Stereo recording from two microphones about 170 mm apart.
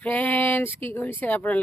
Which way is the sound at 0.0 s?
10° left (ahead or behind).